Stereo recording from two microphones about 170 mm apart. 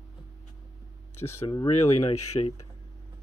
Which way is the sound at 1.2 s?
15° left (ahead or behind).